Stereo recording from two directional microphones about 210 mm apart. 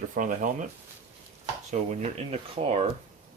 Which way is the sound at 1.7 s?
30° right (ahead or behind).